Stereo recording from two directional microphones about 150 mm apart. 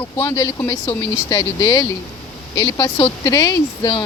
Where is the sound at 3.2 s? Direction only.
20° left (ahead or behind).